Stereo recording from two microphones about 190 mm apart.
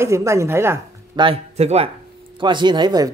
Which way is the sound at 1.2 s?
30° right (ahead or behind).